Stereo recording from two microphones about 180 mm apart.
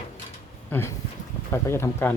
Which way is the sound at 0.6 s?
10° left (ahead or behind).